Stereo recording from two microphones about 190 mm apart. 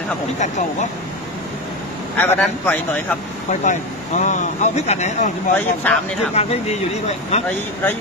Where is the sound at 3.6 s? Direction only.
40° left (ahead or behind).